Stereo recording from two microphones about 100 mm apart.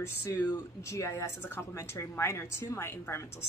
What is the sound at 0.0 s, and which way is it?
Speech, 25° left (ahead or behind).